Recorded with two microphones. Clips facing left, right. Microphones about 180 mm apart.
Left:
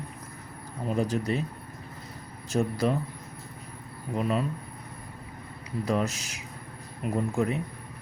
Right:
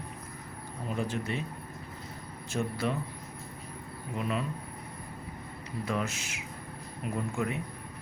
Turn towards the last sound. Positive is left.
turn(degrees=35)  # may be behind; listen again after turning